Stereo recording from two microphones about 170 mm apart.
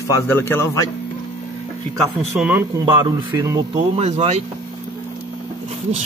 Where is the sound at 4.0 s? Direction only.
40° right (ahead or behind).